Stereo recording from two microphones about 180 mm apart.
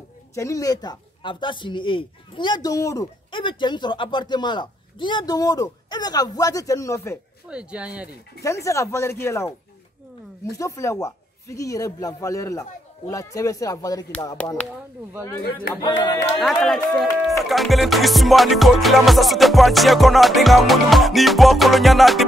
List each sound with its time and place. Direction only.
0.3 s speech: 15° left (ahead or behind)
7.4 s speech: 5° right (ahead or behind)
8.4 s speech: 15° left (ahead or behind)
10.6 s speech: 15° left (ahead or behind)
15.7 s speech: 15° left (ahead or behind)
16.3 s music: centre (ahead or behind)